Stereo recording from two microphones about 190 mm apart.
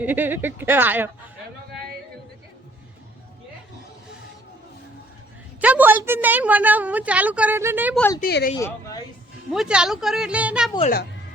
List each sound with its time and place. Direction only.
0.0 s a woman's voice: 10° right (ahead or behind)
5.5 s a woman's voice: 10° right (ahead or behind)
8.2 s speech: 55° left (ahead or behind)
9.5 s speech: 5° right (ahead or behind)